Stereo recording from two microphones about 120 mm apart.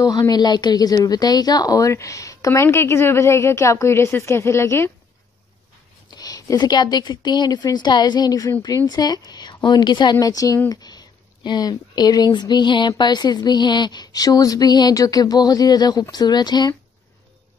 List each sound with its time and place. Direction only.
0.0 s speech: 30° left (ahead or behind)
6.0 s speech: 35° left (ahead or behind)